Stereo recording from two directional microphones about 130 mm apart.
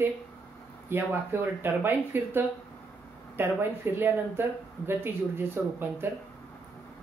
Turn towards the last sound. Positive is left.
turn(degrees=-20)  # may be behind; listen again after turning